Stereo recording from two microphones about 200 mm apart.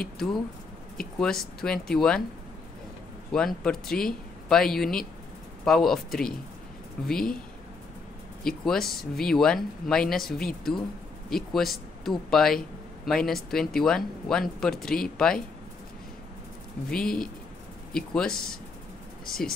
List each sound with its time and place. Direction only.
0.9 s speech: 5° left (ahead or behind)
3.3 s speech: 5° left (ahead or behind)
8.5 s speech: centre (ahead or behind)
16.9 s speech: 5° left (ahead or behind)
19.2 s speech: 45° left (ahead or behind)